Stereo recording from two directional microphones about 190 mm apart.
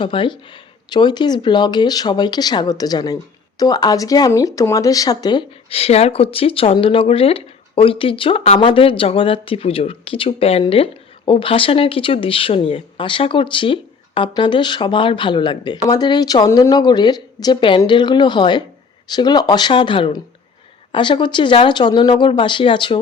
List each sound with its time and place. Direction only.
0.0 s speech: 25° left (ahead or behind)